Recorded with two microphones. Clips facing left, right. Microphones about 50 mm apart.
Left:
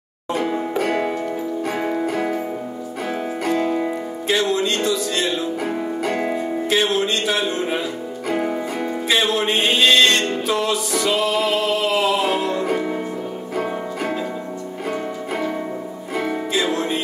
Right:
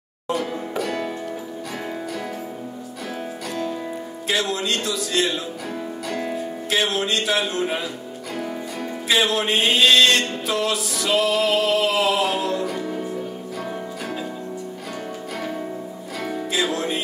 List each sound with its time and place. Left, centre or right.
0.3 s music: left
3.4 s music: left
4.3 s music: centre
6.0 s music: left
6.7 s music: centre
8.3 s music: left
9.1 s music: centre
16.6 s music: centre